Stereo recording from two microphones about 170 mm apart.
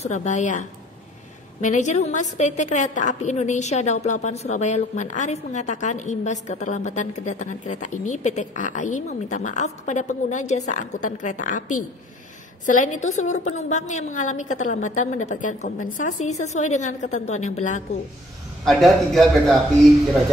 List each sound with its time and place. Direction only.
0.0 s a woman's voice: 45° left (ahead or behind)
18.7 s speech: centre (ahead or behind)